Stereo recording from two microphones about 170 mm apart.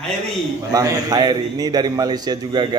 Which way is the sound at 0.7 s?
20° right (ahead or behind).